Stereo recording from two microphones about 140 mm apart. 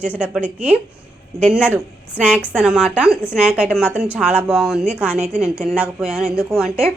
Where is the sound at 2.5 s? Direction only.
5° right (ahead or behind).